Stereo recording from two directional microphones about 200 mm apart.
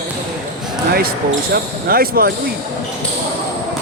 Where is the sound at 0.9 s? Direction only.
50° right (ahead or behind).